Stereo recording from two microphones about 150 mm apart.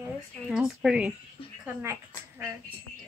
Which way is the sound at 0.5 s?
5° right (ahead or behind).